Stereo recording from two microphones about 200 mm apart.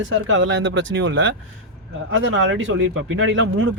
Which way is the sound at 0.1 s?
70° right (ahead or behind).